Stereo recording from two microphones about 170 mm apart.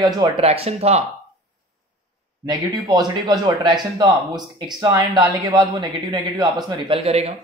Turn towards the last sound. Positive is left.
turn(degrees=-35)  # may be behind; listen again after turning